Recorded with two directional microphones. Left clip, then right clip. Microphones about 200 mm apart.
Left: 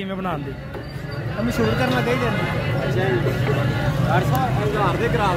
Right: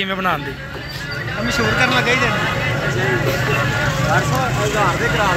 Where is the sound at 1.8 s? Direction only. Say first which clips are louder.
Right 8 dB; 30° left (ahead or behind).